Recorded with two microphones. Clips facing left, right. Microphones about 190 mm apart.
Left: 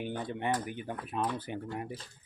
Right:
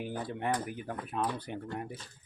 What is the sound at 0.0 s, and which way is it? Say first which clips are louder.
Speech: left 1 dB; 5° right (ahead or behind).